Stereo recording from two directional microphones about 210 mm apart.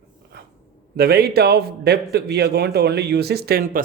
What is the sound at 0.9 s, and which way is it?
A man's voice, 50° right (ahead or behind).